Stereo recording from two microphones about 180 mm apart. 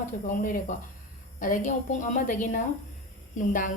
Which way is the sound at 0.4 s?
50° left (ahead or behind).